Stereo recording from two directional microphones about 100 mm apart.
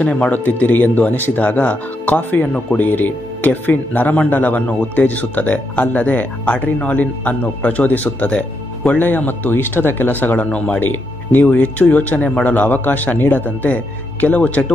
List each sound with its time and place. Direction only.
0.0 s speech: 10° left (ahead or behind)